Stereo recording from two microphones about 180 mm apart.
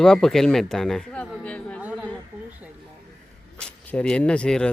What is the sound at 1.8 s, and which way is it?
Speech, 10° right (ahead or behind).